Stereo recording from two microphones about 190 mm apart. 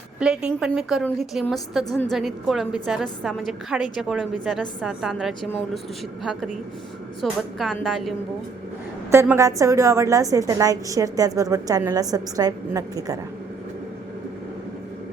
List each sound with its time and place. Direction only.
0.2 s a woman's voice: 5° right (ahead or behind)
9.1 s a woman's voice: 15° right (ahead or behind)